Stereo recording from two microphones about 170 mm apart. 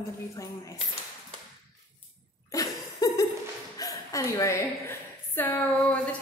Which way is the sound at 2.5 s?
20° left (ahead or behind).